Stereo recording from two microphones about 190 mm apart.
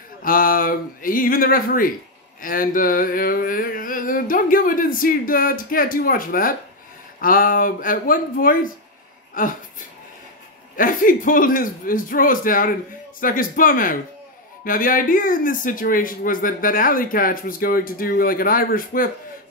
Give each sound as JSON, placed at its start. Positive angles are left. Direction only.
{"t": 0.2, "sound": "speech", "side_deg": 50}
{"t": 10.8, "sound": "speech", "side_deg": 45}